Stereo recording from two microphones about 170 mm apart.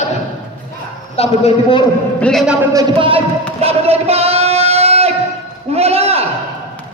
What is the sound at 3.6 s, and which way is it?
Singing, 35° right (ahead or behind).